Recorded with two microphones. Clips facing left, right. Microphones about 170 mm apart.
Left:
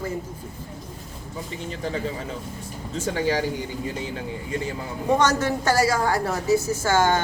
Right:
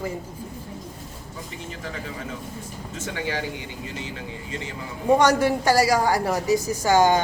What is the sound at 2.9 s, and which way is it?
Speech, 35° left (ahead or behind).